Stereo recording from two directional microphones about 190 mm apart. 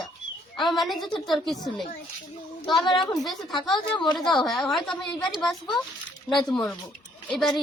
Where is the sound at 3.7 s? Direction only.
25° left (ahead or behind).